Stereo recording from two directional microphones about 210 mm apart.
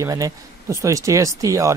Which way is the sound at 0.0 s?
15° right (ahead or behind).